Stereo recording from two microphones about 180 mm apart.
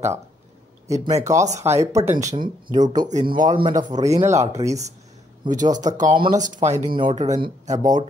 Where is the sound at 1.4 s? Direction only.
40° right (ahead or behind).